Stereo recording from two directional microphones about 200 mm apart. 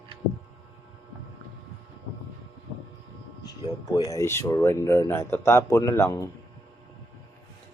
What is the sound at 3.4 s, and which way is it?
Speech, 20° left (ahead or behind).